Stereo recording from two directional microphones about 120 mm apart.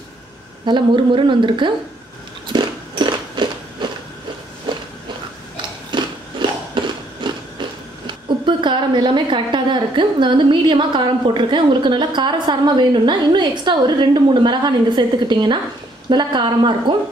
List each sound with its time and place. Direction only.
0.7 s a woman's voice: 40° right (ahead or behind)
2.5 s biting: 40° right (ahead or behind)
5.6 s a sound: 40° right (ahead or behind)
8.1 s a woman's voice: 40° right (ahead or behind)